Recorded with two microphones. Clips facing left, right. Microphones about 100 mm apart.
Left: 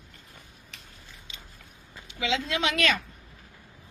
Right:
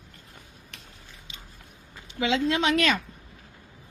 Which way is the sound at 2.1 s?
45° right (ahead or behind).